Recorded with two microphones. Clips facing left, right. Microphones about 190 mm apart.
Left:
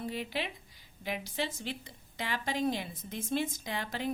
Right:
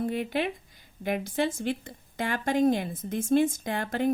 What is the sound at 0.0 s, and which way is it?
Speech, 50° right (ahead or behind).